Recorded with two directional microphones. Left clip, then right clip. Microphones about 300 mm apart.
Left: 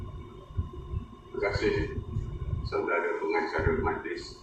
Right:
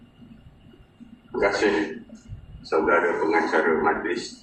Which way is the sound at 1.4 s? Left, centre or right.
Right.